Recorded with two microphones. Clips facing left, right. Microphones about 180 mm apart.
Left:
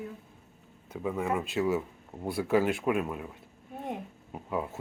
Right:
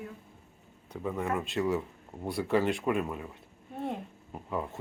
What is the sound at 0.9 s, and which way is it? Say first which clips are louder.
Speech: left 2 dB; centre (ahead or behind).